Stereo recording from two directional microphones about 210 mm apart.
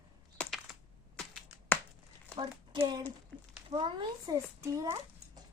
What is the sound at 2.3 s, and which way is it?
Speech, 10° left (ahead or behind).